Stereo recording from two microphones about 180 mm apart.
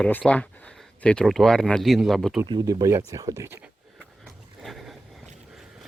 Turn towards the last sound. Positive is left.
turn(degrees=0)  # may be behind; listen again after turning